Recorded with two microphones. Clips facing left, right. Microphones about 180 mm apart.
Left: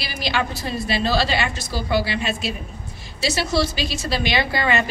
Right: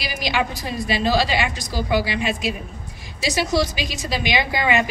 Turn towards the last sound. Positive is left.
turn(degrees=-15)  # may be behind; listen again after turning